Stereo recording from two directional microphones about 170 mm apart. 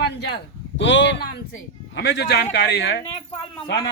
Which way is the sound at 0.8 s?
90° left.